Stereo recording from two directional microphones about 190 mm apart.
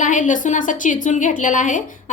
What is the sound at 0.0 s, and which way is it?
A woman's voice, 40° left (ahead or behind).